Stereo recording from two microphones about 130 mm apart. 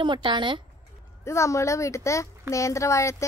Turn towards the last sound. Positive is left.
turn(degrees=25)  # may be behind; listen again after turning